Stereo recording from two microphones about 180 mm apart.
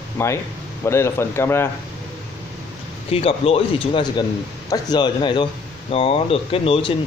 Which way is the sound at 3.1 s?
35° left (ahead or behind).